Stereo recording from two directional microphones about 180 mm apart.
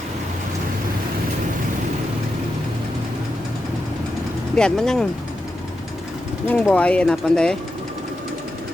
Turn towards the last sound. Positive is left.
turn(degrees=5)  # may be behind; listen again after turning